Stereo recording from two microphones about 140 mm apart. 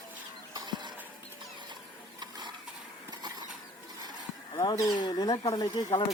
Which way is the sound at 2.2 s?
30° right (ahead or behind).